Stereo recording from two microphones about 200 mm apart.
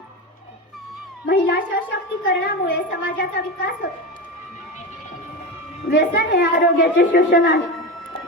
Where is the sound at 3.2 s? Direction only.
45° left (ahead or behind).